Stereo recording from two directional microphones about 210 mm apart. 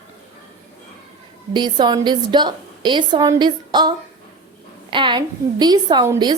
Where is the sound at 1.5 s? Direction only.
20° right (ahead or behind).